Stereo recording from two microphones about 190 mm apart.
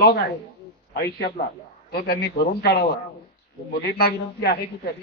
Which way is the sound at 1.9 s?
55° left (ahead or behind).